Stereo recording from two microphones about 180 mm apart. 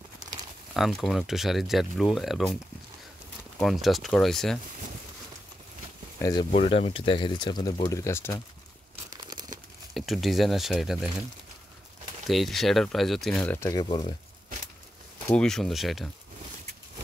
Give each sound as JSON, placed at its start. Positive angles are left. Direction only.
{"t": 0.7, "sound": "speech", "side_deg": 0}
{"t": 6.1, "sound": "a sound", "side_deg": 20}
{"t": 6.5, "sound": "speech", "side_deg": 35}
{"t": 9.1, "sound": "tearing", "side_deg": -25}
{"t": 9.9, "sound": "speech", "side_deg": 0}
{"t": 12.3, "sound": "speech", "side_deg": 0}
{"t": 13.6, "sound": "speech", "side_deg": 20}
{"t": 13.8, "sound": "speech", "side_deg": 30}
{"t": 15.2, "sound": "speech", "side_deg": 5}